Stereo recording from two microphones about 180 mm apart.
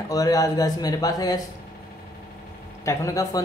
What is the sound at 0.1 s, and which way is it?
Speech, 20° left (ahead or behind).